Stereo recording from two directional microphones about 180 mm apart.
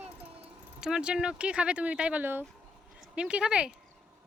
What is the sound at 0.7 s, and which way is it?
Speech, 5° right (ahead or behind).